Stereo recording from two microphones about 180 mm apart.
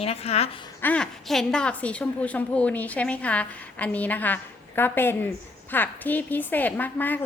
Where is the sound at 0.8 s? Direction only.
5° left (ahead or behind).